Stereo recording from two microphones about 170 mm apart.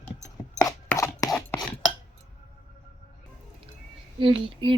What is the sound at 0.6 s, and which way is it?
Chopping, 20° left (ahead or behind).